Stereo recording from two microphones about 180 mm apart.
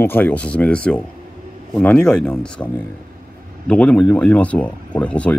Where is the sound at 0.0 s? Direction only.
10° left (ahead or behind).